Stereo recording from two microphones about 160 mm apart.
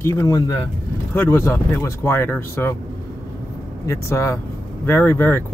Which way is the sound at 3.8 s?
20° left (ahead or behind).